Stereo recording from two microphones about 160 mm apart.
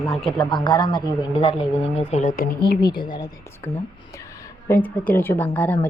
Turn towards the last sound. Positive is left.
turn(degrees=10)  # may be behind; listen again after turning